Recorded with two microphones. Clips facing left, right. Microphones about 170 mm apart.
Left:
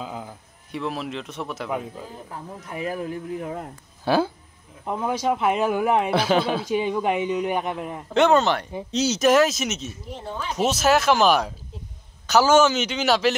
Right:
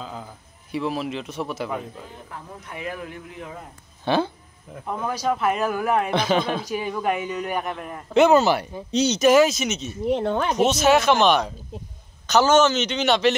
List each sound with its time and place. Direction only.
0.0 s a sound: 10° left (ahead or behind)
0.7 s a man's voice: centre (ahead or behind)
2.3 s speech: 35° left (ahead or behind); by 3.7 s 50° left (ahead or behind)
4.0 s speech: 5° left (ahead or behind)
4.8 s speech: 20° left (ahead or behind)
6.1 s a man's voice: 5° left (ahead or behind)
6.6 s speech: 20° left (ahead or behind)
8.1 s a man's voice: 5° right (ahead or behind)
10.0 s speech: 70° right (ahead or behind)
10.6 s a man's voice: 5° left (ahead or behind)